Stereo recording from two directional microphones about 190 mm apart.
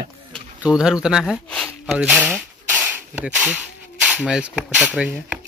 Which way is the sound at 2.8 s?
10° right (ahead or behind).